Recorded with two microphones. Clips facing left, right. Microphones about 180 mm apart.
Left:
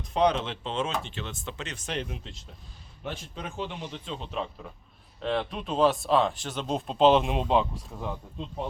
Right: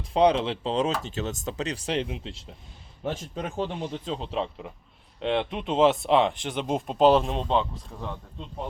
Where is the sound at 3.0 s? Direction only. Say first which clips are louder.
Right 6 dB; 45° right (ahead or behind); by 7.0 s 10° right (ahead or behind).